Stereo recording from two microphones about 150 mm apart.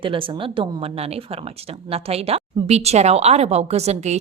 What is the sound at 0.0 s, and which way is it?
A woman's voice, 35° right (ahead or behind).